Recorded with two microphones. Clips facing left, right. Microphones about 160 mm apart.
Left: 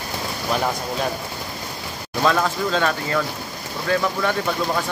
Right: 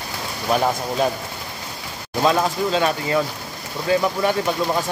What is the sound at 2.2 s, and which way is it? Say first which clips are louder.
Speech: right 1 dB; 20° right (ahead or behind).